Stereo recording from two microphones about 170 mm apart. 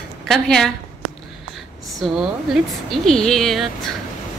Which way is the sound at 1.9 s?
Centre (ahead or behind).